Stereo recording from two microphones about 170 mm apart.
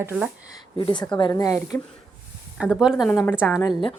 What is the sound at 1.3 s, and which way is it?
Speech, 20° left (ahead or behind).